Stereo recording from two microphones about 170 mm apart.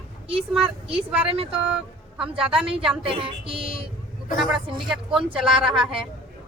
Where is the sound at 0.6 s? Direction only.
35° right (ahead or behind).